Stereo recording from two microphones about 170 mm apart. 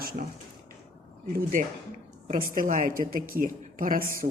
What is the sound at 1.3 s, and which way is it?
A woman's voice, 55° right (ahead or behind).